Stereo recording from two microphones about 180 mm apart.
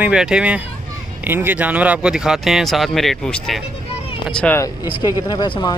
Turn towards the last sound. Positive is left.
turn(degrees=25)  # may be behind; listen again after turning